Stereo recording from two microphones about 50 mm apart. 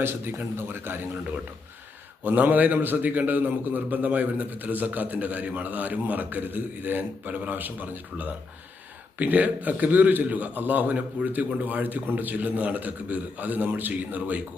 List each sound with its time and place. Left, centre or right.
0.3 s a man's voice: right
2.2 s a man's voice: right